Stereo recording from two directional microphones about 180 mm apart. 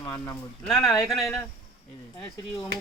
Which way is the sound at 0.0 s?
10° left (ahead or behind).